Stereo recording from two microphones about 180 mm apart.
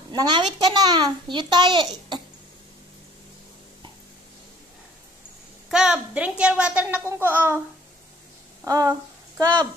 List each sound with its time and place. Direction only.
0.1 s a child's voice: 25° right (ahead or behind)
5.7 s a child's voice: 5° right (ahead or behind)
8.6 s a sound: 20° right (ahead or behind)